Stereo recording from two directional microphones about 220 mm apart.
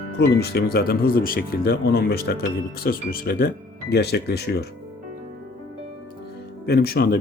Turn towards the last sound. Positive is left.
turn(degrees=45)  # may be behind; listen again after turning